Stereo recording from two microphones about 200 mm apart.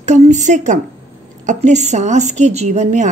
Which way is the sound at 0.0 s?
35° right (ahead or behind).